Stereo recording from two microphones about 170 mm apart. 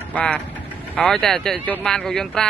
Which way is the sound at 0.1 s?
10° left (ahead or behind).